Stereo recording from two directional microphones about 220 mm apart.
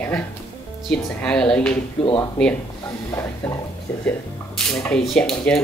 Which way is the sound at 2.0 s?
25° left (ahead or behind).